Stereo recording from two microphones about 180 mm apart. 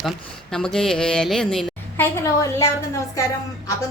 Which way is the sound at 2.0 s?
15° left (ahead or behind).